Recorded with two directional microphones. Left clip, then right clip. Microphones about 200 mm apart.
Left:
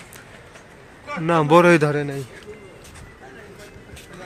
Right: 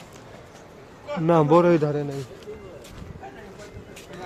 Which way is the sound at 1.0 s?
15° right (ahead or behind).